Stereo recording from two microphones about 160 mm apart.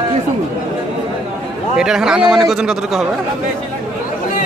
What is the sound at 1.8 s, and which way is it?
A man's voice, 5° right (ahead or behind).